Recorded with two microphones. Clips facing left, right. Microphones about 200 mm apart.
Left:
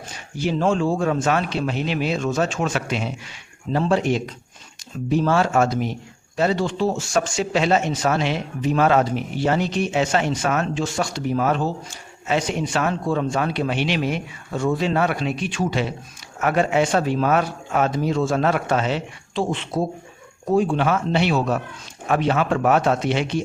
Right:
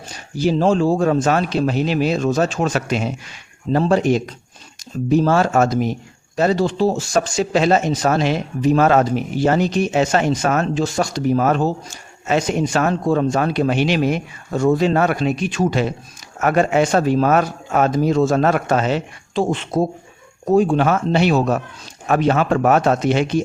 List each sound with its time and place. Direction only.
0.3 s a man's voice: 35° right (ahead or behind)